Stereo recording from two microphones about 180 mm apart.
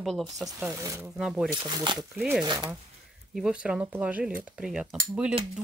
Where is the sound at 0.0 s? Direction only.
Centre (ahead or behind).